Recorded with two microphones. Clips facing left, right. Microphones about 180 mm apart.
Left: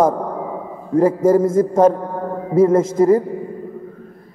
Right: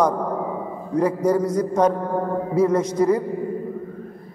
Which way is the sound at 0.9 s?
25° left (ahead or behind).